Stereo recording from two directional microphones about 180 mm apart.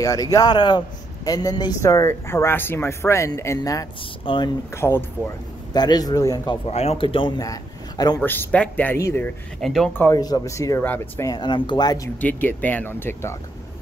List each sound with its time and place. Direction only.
0.0 s a man's voice: 20° left (ahead or behind)
4.3 s speech: 30° left (ahead or behind)
4.7 s speech: 15° left (ahead or behind)
6.7 s speech: 35° left (ahead or behind)
8.2 s a man's voice: 10° left (ahead or behind)
9.6 s speech: centre (ahead or behind)
10.0 s speech: 20° left (ahead or behind)
12.2 s a man's voice: 10° left (ahead or behind)